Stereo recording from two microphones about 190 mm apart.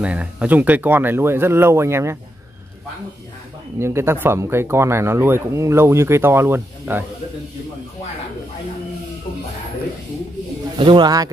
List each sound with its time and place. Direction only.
0.0 s speech: 5° right (ahead or behind)
3.8 s speech: 15° right (ahead or behind)
10.8 s speech: 25° right (ahead or behind)